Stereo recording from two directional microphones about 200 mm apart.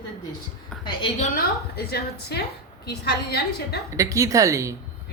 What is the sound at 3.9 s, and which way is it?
Speech, 15° right (ahead or behind).